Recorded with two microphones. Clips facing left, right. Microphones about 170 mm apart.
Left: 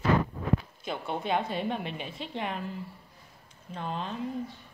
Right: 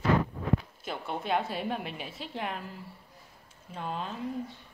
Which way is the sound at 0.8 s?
Centre (ahead or behind).